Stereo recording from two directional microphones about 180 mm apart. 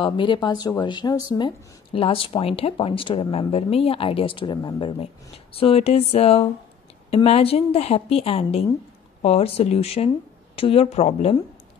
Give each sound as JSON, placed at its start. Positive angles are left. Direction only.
{"t": 0.0, "sound": "speech", "side_deg": 25}